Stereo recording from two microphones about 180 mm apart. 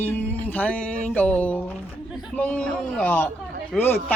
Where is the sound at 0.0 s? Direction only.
10° left (ahead or behind).